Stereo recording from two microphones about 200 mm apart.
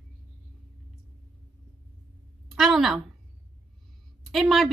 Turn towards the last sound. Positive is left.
turn(degrees=0)  # may be behind; listen again after turning